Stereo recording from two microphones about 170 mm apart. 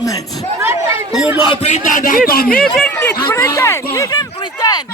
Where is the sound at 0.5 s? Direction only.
15° right (ahead or behind).